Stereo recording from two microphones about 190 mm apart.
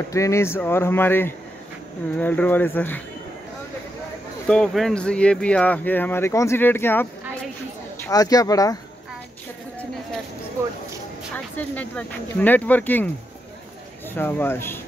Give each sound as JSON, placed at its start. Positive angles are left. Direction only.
{"t": 0.1, "sound": "speech", "side_deg": 15}
{"t": 4.5, "sound": "speech", "side_deg": 5}
{"t": 10.6, "sound": "speech", "side_deg": -15}
{"t": 11.3, "sound": "speech", "side_deg": 10}
{"t": 14.1, "sound": "speech", "side_deg": 10}